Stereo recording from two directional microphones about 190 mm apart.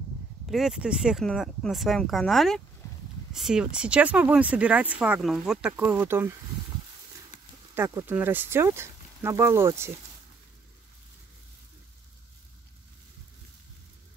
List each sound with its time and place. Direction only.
0.5 s speech: 5° right (ahead or behind)
7.3 s a sound: 40° left (ahead or behind)
7.7 s speech: 10° right (ahead or behind)